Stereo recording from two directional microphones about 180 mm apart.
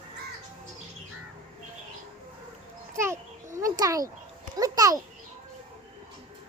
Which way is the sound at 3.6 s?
20° right (ahead or behind).